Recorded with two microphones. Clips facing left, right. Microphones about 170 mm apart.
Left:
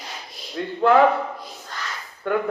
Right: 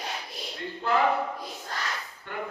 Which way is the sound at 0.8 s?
65° left (ahead or behind).